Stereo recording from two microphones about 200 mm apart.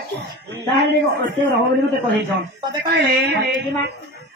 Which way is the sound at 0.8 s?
55° right (ahead or behind).